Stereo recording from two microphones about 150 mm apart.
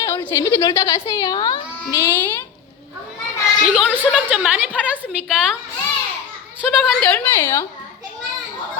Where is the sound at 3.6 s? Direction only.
5° right (ahead or behind).